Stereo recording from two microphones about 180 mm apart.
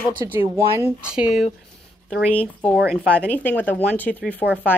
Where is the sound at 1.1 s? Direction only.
5° right (ahead or behind).